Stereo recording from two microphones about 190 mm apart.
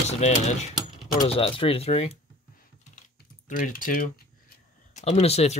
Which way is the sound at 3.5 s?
45° left (ahead or behind).